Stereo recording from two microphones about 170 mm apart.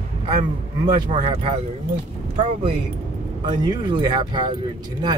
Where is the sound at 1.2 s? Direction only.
35° right (ahead or behind).